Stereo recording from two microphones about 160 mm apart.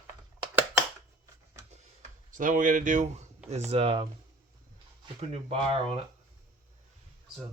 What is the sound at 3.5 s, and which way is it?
Speech, 45° right (ahead or behind).